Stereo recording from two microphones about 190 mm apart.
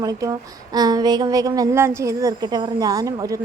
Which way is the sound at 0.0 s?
20° right (ahead or behind).